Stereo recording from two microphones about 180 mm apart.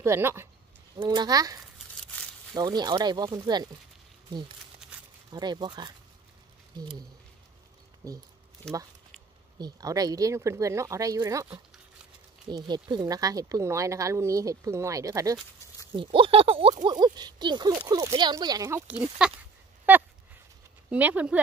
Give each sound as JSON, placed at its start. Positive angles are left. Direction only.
{"t": 0.0, "sound": "speech", "side_deg": -15}
{"t": 5.3, "sound": "speech", "side_deg": -25}
{"t": 8.0, "sound": "speech", "side_deg": -20}
{"t": 8.6, "sound": "speech", "side_deg": 5}
{"t": 9.6, "sound": "speech", "side_deg": -20}
{"t": 12.4, "sound": "speech", "side_deg": -25}
{"t": 15.9, "sound": "speech", "side_deg": -30}
{"t": 18.9, "sound": "speech", "side_deg": -5}
{"t": 19.9, "sound": "a sound", "side_deg": -10}
{"t": 20.9, "sound": "speech", "side_deg": -10}